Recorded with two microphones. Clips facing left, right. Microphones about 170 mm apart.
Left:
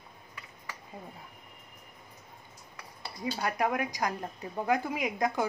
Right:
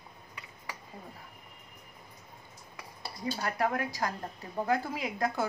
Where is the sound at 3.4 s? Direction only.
15° left (ahead or behind).